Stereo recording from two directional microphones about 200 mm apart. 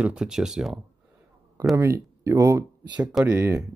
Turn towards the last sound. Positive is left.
turn(degrees=-15)  # may be behind; listen again after turning